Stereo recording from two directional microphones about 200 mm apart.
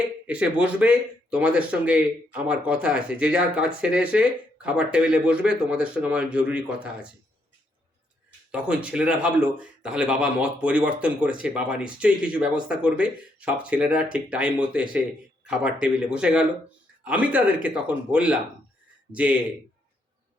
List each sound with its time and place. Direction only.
0.3 s speech: 5° right (ahead or behind)
8.5 s speech: 5° right (ahead or behind)